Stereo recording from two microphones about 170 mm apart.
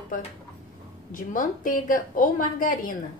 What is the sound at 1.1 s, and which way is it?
A woman's voice, 50° left (ahead or behind).